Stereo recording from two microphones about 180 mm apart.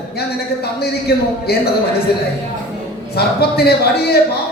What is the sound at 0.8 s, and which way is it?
Speech, 60° left (ahead or behind).